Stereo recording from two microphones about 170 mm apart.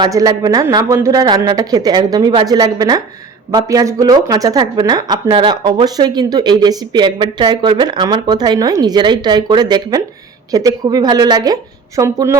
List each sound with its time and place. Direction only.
0.0 s speech: 20° right (ahead or behind)